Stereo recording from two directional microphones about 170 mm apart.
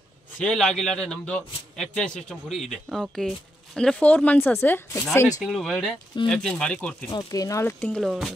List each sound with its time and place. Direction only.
0.4 s a man's voice: 5° left (ahead or behind)
5.4 s a man's voice: centre (ahead or behind)
7.1 s speech: 20° left (ahead or behind)
8.0 s a man's voice: centre (ahead or behind)